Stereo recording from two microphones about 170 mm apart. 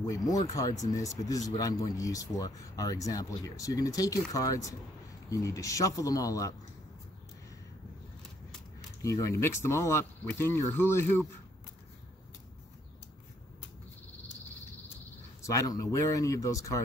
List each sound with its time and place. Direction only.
0.0 s speech: 20° left (ahead or behind)
9.0 s speech: 20° left (ahead or behind)
15.4 s speech: 20° left (ahead or behind)